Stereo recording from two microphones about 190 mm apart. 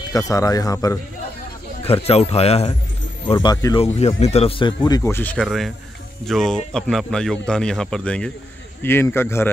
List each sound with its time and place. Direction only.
0.1 s speech: 15° left (ahead or behind)
1.9 s speech: 35° left (ahead or behind)
3.3 s speech: 20° left (ahead or behind)
3.8 s speech: 35° left (ahead or behind); by 9.5 s 10° left (ahead or behind)